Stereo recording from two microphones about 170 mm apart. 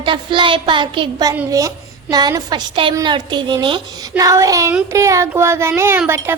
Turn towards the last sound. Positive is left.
turn(degrees=-15)  # may be behind; listen again after turning